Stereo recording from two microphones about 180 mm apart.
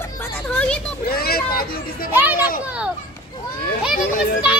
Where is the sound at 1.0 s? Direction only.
55° left (ahead or behind).